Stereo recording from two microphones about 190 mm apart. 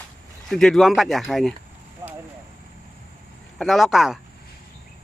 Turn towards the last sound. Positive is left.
turn(degrees=0)  # may be behind; listen again after turning